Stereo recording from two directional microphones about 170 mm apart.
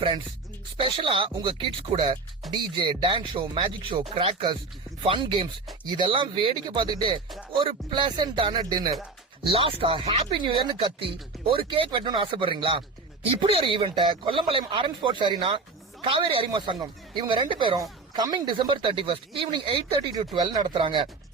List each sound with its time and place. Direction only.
0.8 s speech: 30° right (ahead or behind)